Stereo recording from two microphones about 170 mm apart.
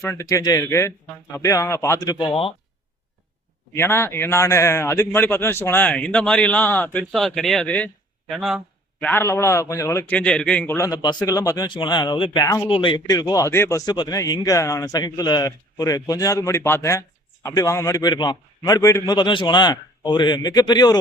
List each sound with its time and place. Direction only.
0.0 s speech: 15° left (ahead or behind)
2.1 s speech: 30° left (ahead or behind)
3.7 s a man's voice: 15° left (ahead or behind); by 8.6 s centre (ahead or behind)
9.0 s a man's voice: 10° left (ahead or behind)